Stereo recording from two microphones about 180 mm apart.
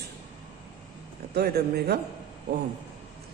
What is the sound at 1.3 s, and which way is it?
Speech, 60° right (ahead or behind).